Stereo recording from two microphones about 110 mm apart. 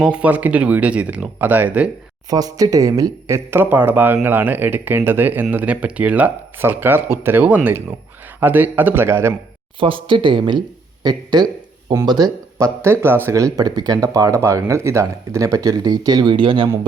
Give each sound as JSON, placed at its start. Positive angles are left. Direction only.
{"t": 0.0, "sound": "speech", "side_deg": -10}
{"t": 2.3, "sound": "speech", "side_deg": -35}
{"t": 9.8, "sound": "speech", "side_deg": -50}
{"t": 12.8, "sound": "speech", "side_deg": -20}